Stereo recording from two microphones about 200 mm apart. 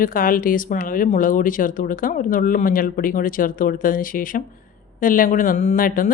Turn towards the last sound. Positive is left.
turn(degrees=45)  # may be behind; listen again after turning